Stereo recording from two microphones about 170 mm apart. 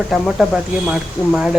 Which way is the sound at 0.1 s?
Centre (ahead or behind).